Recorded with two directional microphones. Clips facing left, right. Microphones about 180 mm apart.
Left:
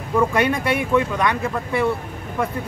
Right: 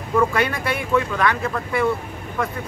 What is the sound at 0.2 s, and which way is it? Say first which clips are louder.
Speech: left 2 dB; 15° left (ahead or behind).